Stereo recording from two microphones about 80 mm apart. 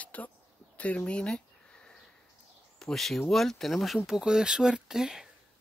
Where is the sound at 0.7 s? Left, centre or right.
Centre.